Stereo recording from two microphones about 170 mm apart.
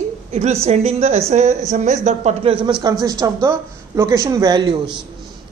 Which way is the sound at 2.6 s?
5° right (ahead or behind).